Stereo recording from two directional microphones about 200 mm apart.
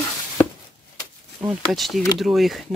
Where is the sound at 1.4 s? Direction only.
Centre (ahead or behind).